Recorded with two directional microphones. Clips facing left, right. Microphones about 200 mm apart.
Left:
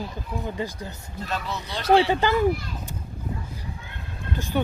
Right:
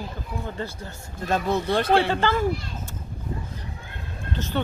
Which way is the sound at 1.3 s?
50° right (ahead or behind).